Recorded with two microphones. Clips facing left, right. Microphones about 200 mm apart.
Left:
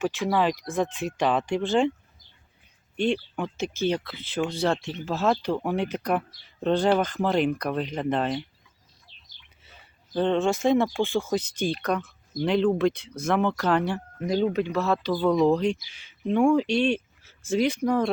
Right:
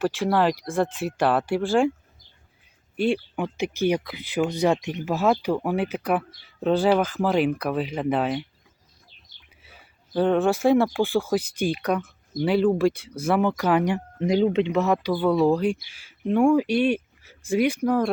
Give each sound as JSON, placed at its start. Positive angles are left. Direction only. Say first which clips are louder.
{"t": 0.4, "sound": "speech", "louder": "right 2 dB", "side_deg": -10}
{"t": 2.9, "sound": "speech", "louder": "right 2 dB", "side_deg": -5}
{"t": 9.6, "sound": "speech", "louder": "right 2 dB", "side_deg": -10}
{"t": 16.8, "sound": "a sound", "louder": "right 2 dB", "side_deg": -10}
{"t": 17.7, "sound": "speech", "louder": "right 2 dB", "side_deg": -5}